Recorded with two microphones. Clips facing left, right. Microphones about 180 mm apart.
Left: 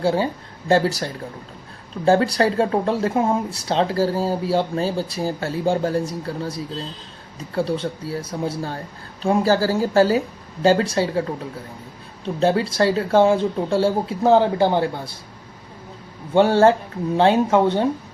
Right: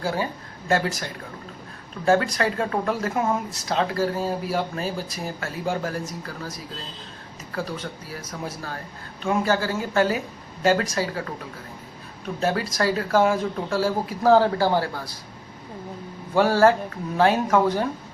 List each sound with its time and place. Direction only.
0.0 s speech: 30° left (ahead or behind)
16.3 s speech: 25° left (ahead or behind)